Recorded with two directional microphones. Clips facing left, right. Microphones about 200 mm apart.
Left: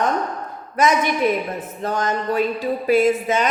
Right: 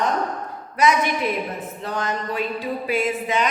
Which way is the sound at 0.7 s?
45° left (ahead or behind).